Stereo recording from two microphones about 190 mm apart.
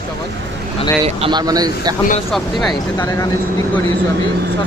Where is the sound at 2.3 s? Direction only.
Centre (ahead or behind).